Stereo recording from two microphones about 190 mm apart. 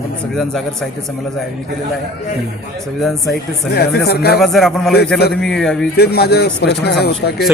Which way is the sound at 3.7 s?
55° left (ahead or behind).